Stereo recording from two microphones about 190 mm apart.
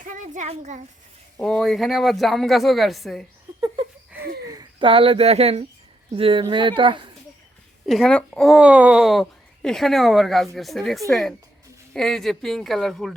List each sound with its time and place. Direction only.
0.0 s a sound: 40° right (ahead or behind)
1.4 s speech: 5° left (ahead or behind)
4.4 s speech: 25° right (ahead or behind)
7.9 s speech: centre (ahead or behind)